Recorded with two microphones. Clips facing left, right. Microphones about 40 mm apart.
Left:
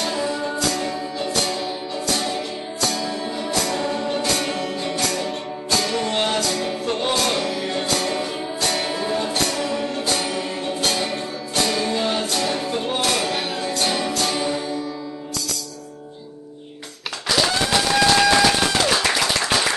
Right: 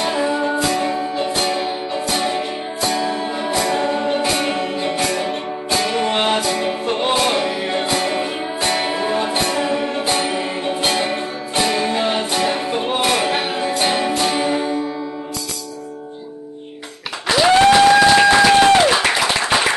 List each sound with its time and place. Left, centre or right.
0.0 s music: right
17.3 s applause: right
17.6 s applause: right
18.1 s a sound: right
18.5 s a sound: right
18.8 s applause: right